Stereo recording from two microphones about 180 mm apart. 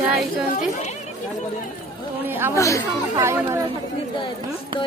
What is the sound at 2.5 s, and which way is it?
Speech, 15° left (ahead or behind).